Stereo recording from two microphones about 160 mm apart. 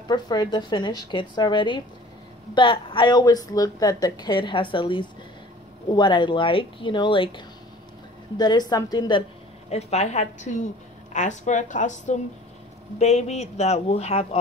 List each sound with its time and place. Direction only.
0.1 s a woman's voice: 25° left (ahead or behind)
9.7 s speech: 40° left (ahead or behind)